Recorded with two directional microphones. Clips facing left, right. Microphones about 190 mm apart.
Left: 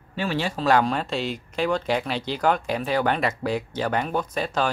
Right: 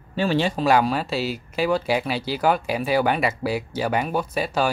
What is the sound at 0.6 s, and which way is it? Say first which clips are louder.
Speech: left 2 dB; 10° right (ahead or behind).